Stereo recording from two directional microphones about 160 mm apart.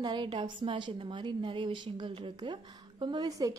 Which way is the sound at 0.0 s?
30° right (ahead or behind).